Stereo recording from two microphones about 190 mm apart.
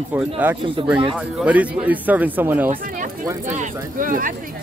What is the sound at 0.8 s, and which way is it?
Speech, 25° right (ahead or behind).